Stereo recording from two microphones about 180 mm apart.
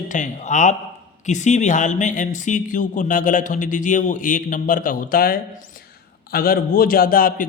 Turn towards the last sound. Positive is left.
turn(degrees=50)  # may be behind; listen again after turning